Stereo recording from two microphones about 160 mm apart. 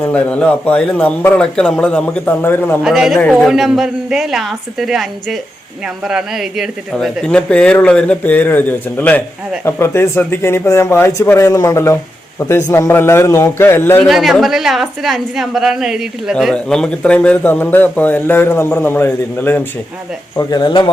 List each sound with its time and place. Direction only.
0.0 s a woman's voice: 5° left (ahead or behind)
2.8 s a woman's voice: centre (ahead or behind); by 14.1 s 15° left (ahead or behind)
14.1 s a woman's voice: centre (ahead or behind)
20.3 s speech: 25° left (ahead or behind)